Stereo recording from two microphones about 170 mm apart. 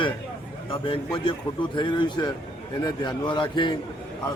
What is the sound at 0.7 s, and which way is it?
A man's voice, 30° left (ahead or behind).